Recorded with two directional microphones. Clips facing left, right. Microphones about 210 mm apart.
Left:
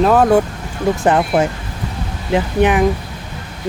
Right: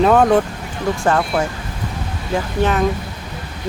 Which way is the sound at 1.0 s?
20° left (ahead or behind).